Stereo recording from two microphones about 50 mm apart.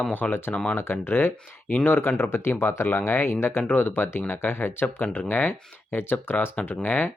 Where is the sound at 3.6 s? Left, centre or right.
Left.